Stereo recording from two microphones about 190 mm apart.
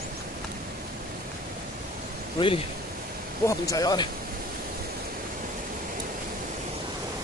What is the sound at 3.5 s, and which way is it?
Speech, 15° left (ahead or behind).